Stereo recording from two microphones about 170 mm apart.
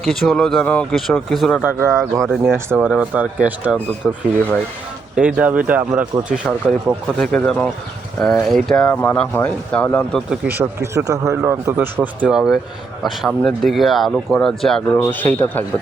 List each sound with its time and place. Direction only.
0.0 s speech: 5° left (ahead or behind)
1.6 s speech: 15° right (ahead or behind)
5.1 s speech: 5° right (ahead or behind)
10.4 s speech: 10° right (ahead or behind); by 15.6 s 10° left (ahead or behind)